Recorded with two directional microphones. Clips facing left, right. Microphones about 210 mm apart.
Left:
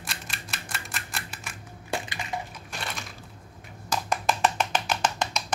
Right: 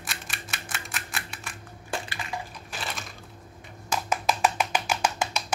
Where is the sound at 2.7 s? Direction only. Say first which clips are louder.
Even; centre (ahead or behind).